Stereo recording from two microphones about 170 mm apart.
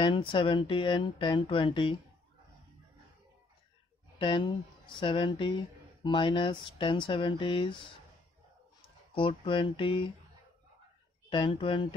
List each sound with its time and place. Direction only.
0.0 s speech: 30° left (ahead or behind)
4.2 s speech: 30° left (ahead or behind)
9.1 s speech: 30° left (ahead or behind)
11.2 s speech: 25° left (ahead or behind)